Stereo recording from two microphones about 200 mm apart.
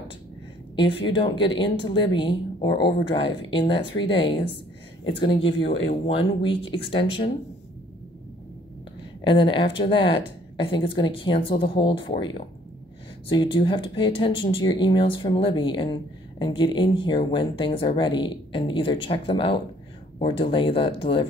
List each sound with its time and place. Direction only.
0.7 s speech: 25° left (ahead or behind)
5.4 s speech: 65° left (ahead or behind)
6.0 s speech: 25° left (ahead or behind)
9.2 s speech: 25° left (ahead or behind)